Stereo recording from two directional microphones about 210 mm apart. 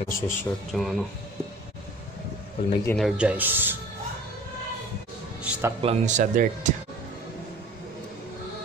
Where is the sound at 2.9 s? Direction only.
Centre (ahead or behind).